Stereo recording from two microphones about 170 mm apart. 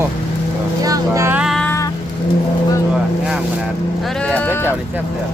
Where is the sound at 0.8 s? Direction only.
20° right (ahead or behind).